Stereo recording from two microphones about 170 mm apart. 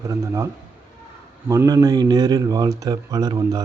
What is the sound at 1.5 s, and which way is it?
A man's voice, 20° right (ahead or behind).